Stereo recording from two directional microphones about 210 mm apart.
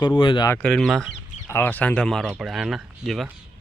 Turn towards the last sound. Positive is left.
turn(degrees=0)  # may be behind; listen again after turning